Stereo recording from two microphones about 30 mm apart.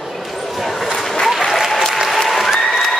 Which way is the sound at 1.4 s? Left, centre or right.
Centre.